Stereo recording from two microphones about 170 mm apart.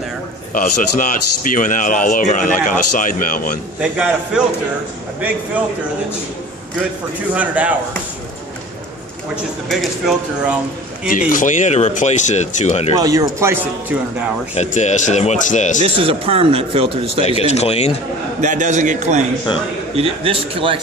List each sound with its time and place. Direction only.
0.6 s a man's voice: 50° left (ahead or behind)
3.8 s speech: 5° right (ahead or behind)
7.3 s speech: 10° right (ahead or behind)
9.3 s speech: centre (ahead or behind)
11.2 s a man's voice: 50° left (ahead or behind)
13.0 s speech: 20° right (ahead or behind)
14.5 s a man's voice: 45° left (ahead or behind)
15.8 s speech: 35° right (ahead or behind)
17.2 s speech: 40° left (ahead or behind)
18.4 s a man's voice: 45° right (ahead or behind)
20.0 s speech: 35° right (ahead or behind)